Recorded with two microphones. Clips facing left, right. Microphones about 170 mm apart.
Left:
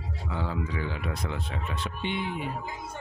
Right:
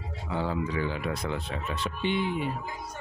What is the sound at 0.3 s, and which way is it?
Speech, 35° right (ahead or behind).